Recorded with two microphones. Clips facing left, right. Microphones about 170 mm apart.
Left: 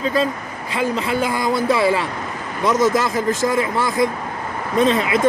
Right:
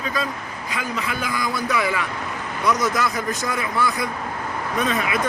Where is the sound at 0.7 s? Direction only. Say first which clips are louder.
Left 7 dB; 30° left (ahead or behind).